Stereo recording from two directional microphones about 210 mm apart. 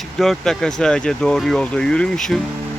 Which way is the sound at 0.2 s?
Centre (ahead or behind).